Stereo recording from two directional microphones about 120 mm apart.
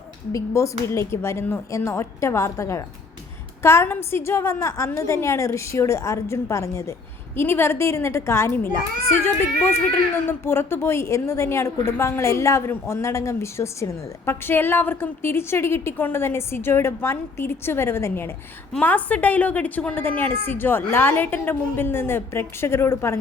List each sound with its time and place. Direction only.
0.3 s a woman's voice: 25° left (ahead or behind)